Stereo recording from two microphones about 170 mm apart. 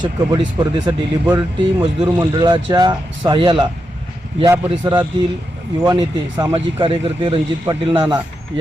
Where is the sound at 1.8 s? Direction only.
25° right (ahead or behind).